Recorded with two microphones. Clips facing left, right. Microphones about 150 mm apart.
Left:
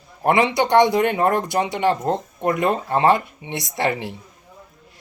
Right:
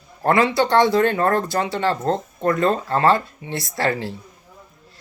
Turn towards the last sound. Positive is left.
turn(degrees=20)  # may be behind; listen again after turning